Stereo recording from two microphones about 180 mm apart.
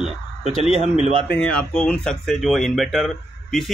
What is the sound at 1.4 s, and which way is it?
Speech, 5° left (ahead or behind).